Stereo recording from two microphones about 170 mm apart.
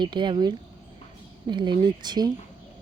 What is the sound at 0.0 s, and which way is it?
Speech, 25° right (ahead or behind).